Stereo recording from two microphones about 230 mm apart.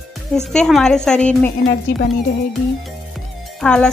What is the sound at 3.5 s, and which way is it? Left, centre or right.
Speech, centre.